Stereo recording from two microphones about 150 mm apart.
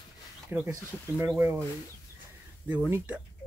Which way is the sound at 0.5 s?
15° right (ahead or behind).